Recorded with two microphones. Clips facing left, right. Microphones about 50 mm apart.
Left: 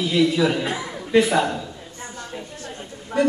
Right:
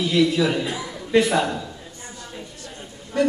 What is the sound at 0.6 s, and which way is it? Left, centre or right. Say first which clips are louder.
Speech: left 2 dB; left.